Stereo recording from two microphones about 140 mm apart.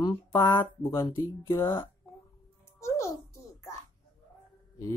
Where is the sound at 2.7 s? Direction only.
20° left (ahead or behind).